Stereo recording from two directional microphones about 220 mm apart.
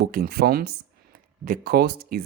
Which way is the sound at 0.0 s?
45° right (ahead or behind).